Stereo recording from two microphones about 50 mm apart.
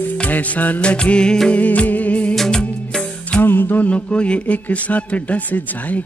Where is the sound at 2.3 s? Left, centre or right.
Centre.